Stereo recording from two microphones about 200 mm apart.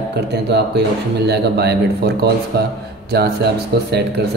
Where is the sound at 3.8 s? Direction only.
55° right (ahead or behind).